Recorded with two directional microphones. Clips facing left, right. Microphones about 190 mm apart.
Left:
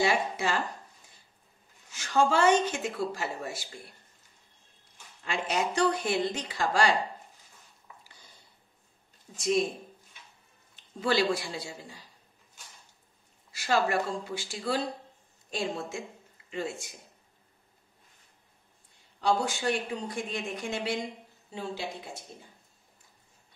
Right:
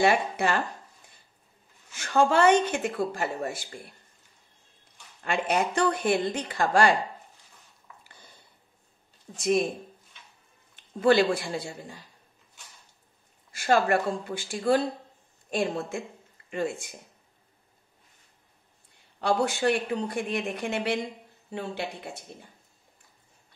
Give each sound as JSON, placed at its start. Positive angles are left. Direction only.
{"t": 0.0, "sound": "speech", "side_deg": -55}
{"t": 1.9, "sound": "speech", "side_deg": -55}
{"t": 5.2, "sound": "speech", "side_deg": -55}
{"t": 9.4, "sound": "speech", "side_deg": -55}
{"t": 10.8, "sound": "speech", "side_deg": -55}
{"t": 13.5, "sound": "speech", "side_deg": -50}
{"t": 19.2, "sound": "speech", "side_deg": -60}